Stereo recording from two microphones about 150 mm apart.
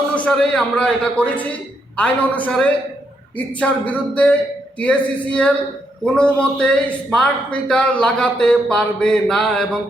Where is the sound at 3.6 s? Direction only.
10° left (ahead or behind).